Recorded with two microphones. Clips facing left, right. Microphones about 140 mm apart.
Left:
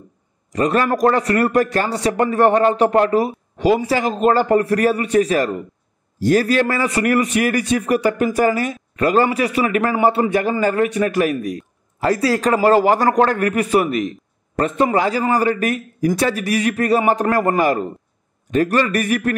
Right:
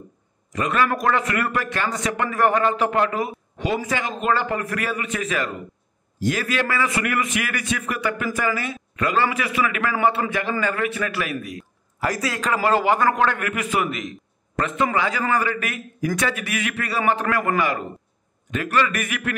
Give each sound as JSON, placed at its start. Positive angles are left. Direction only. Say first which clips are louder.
{"t": 0.5, "sound": "a man's voice", "louder": "left 5 dB", "side_deg": 35}
{"t": 11.4, "sound": "a man's voice", "louder": "left 9 dB", "side_deg": 30}